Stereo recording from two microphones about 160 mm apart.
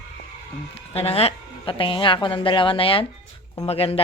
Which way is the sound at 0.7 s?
40° left (ahead or behind).